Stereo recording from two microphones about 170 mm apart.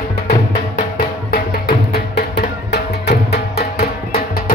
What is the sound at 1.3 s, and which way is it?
Music, 65° left (ahead or behind).